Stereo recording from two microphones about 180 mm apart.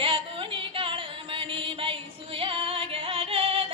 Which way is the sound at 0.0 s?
30° right (ahead or behind).